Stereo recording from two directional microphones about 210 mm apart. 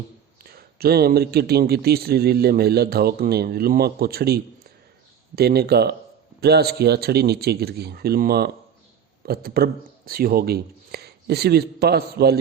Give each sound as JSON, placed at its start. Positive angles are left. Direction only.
{"t": 0.4, "sound": "a man's voice", "side_deg": -45}